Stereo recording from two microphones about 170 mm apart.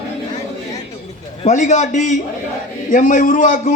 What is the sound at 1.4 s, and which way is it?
A man's voice, 45° left (ahead or behind).